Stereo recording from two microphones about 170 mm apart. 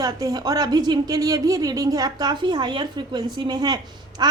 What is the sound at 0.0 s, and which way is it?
A woman's voice, 20° right (ahead or behind).